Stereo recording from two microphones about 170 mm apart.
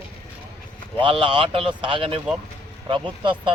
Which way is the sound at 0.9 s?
30° right (ahead or behind).